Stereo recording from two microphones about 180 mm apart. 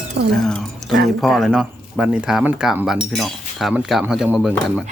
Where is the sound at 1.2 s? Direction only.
Centre (ahead or behind).